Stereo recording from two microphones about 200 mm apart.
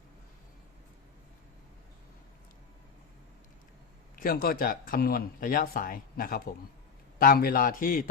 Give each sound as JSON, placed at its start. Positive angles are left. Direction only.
{"t": 4.1, "sound": "speech", "side_deg": 45}